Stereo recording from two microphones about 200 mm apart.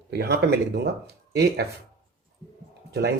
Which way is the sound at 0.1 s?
55° right (ahead or behind).